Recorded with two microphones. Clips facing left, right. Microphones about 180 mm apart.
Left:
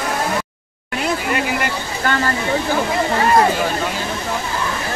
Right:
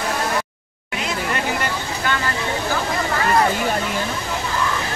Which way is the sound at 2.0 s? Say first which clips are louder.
Left 5 dB; 45° left (ahead or behind).